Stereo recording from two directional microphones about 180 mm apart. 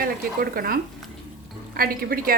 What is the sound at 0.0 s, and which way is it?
Speech, 55° right (ahead or behind).